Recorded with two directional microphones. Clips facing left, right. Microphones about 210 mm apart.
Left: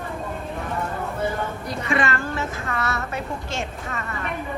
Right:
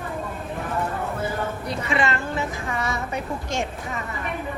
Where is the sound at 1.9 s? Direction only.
20° right (ahead or behind).